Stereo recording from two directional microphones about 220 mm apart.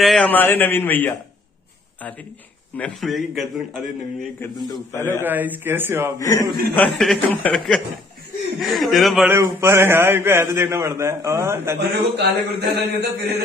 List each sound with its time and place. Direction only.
0.0 s a man's voice: 5° left (ahead or behind)
2.8 s a man's voice: centre (ahead or behind)
4.9 s a man's voice: 10° left (ahead or behind)
5.2 s a man's voice: 10° right (ahead or behind)
6.1 s a man's voice: 15° left (ahead or behind); by 11.8 s 10° right (ahead or behind)
11.9 s mantra: 50° right (ahead or behind)